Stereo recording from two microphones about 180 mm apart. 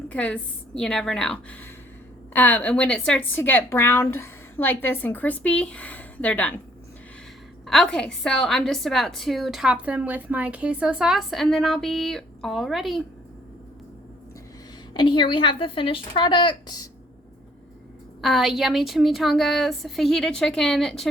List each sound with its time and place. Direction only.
0.1 s a woman's voice: 5° left (ahead or behind)
7.7 s a woman's voice: 5° left (ahead or behind)
14.9 s a woman's voice: 25° left (ahead or behind)
18.2 s a woman's voice: centre (ahead or behind)